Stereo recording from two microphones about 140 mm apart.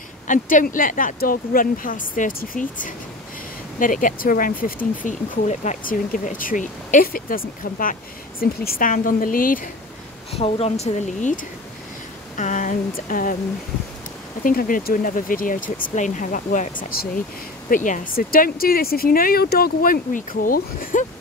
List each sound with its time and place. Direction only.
0.3 s speech: 70° left (ahead or behind); by 4.7 s 90° left
5.0 s speech: 60° left (ahead or behind); by 9.7 s 85° left
10.3 s speech: 45° left (ahead or behind)
12.4 s speech: 65° left (ahead or behind)
14.4 s speech: 85° left; by 16.7 s 70° left (ahead or behind)
16.9 s speech: 90° left
17.6 s speech: 70° left (ahead or behind)